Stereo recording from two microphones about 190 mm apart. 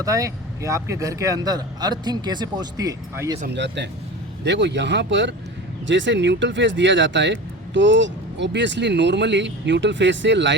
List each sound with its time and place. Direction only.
0.0 s speech: 15° right (ahead or behind)
3.5 s speech: 65° right (ahead or behind)